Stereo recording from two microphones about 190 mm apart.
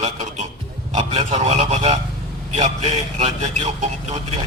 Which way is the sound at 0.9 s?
35° right (ahead or behind).